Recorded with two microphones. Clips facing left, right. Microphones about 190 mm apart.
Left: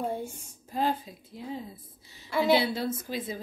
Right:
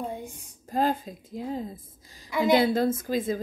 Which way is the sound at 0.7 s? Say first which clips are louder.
Right 3 dB; 50° right (ahead or behind).